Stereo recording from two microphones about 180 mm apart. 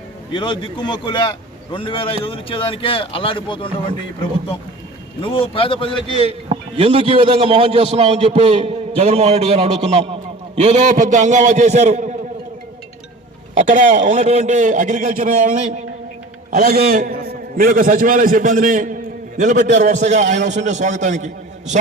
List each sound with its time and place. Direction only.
0.3 s a man's voice: 25° left (ahead or behind)
5.2 s a man's voice: 30° left (ahead or behind)
6.1 s a man's voice: 35° right (ahead or behind)
13.6 s a man's voice: 45° right (ahead or behind)
14.2 s a man's voice: 35° right (ahead or behind)
16.6 s a man's voice: 60° right (ahead or behind); by 21.2 s 40° right (ahead or behind)